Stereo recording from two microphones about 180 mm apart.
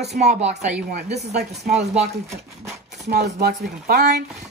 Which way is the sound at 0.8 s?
60° right (ahead or behind).